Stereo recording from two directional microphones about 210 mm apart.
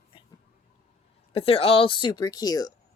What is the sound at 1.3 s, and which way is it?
A woman's voice, 25° left (ahead or behind).